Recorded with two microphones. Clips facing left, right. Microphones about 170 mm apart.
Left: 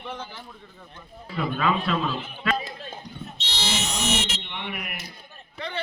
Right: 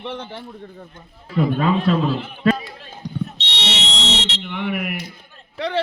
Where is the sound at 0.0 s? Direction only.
65° right (ahead or behind).